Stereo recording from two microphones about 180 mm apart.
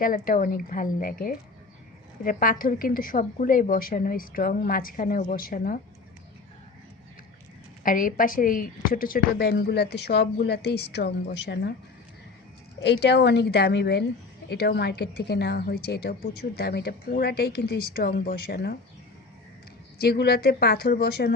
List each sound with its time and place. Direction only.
0.0 s a woman's voice: 50° left (ahead or behind)
7.9 s a woman's voice: 50° left (ahead or behind); by 11.7 s 70° left (ahead or behind)
12.8 s a woman's voice: 70° left (ahead or behind)
20.0 s a woman's voice: 60° left (ahead or behind)